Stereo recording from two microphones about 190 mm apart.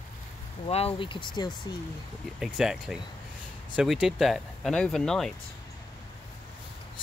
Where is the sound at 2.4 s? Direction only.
5° right (ahead or behind).